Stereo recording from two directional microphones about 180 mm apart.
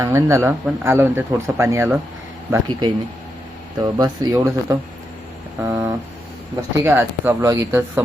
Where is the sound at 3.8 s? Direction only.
20° right (ahead or behind).